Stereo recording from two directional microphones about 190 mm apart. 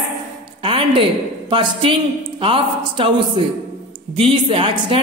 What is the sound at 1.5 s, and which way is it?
Speech, 25° right (ahead or behind).